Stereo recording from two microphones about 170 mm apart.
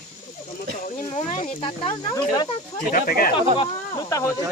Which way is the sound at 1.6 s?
35° left (ahead or behind).